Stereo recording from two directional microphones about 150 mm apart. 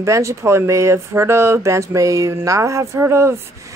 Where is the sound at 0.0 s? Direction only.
20° right (ahead or behind).